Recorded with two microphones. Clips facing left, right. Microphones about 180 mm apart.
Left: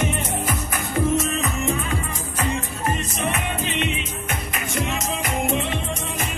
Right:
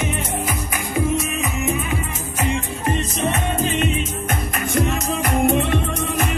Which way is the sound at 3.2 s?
40° right (ahead or behind).